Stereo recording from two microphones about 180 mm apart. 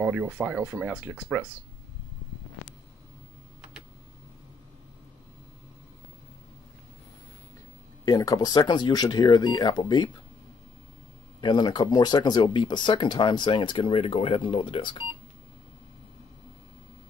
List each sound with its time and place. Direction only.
0.0 s speech: 5° right (ahead or behind)
8.0 s speech: 20° left (ahead or behind)
11.4 s speech: 25° left (ahead or behind)